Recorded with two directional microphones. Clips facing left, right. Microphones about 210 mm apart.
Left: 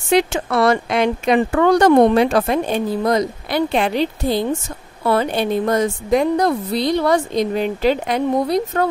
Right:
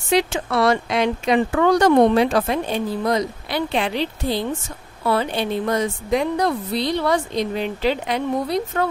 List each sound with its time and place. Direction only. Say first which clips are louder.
0.1 s speech: left 3 dB; 50° left (ahead or behind)